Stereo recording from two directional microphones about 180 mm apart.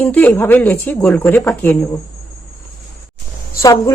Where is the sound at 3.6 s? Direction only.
15° left (ahead or behind).